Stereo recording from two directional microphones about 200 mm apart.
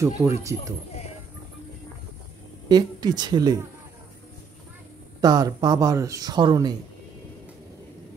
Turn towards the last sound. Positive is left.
turn(degrees=-20)  # may be behind; listen again after turning